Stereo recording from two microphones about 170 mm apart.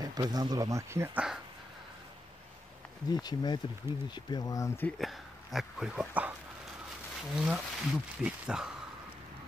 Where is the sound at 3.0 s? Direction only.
25° left (ahead or behind).